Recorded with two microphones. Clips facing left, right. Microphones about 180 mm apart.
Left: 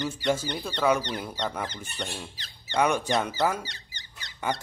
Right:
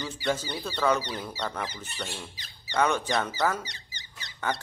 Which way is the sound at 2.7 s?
10° left (ahead or behind).